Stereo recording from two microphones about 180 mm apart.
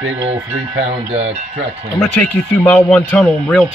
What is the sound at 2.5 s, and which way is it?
Speech, 10° left (ahead or behind).